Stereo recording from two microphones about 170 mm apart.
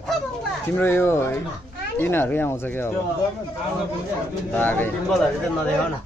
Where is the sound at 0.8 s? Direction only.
10° left (ahead or behind).